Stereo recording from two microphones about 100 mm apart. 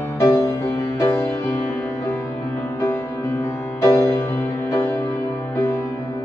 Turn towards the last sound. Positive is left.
turn(degrees=30)  # may be behind; listen again after turning